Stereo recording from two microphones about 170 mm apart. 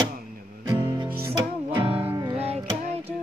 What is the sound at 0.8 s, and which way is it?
Music, 25° right (ahead or behind).